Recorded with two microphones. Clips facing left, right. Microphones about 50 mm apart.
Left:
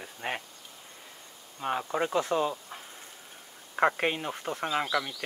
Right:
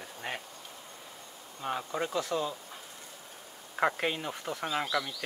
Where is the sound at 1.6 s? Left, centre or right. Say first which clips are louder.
Left 4 dB; centre.